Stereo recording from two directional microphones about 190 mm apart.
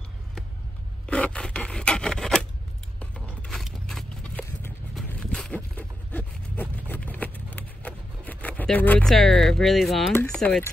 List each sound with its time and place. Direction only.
1.0 s filing: 5° left (ahead or behind)
3.0 s a sound: centre (ahead or behind)
10.1 s speech: 5° left (ahead or behind)